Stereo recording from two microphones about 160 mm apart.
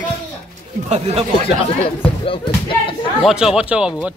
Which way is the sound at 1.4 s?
35° left (ahead or behind).